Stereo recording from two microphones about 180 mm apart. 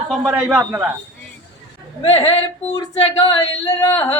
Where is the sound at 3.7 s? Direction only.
15° left (ahead or behind).